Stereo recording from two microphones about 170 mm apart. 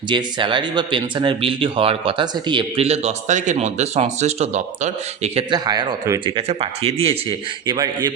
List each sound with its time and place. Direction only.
0.1 s speech: 25° right (ahead or behind)
5.5 s speech: 25° right (ahead or behind)